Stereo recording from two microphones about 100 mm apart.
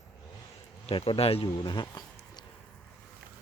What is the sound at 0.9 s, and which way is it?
Speech, 70° left (ahead or behind).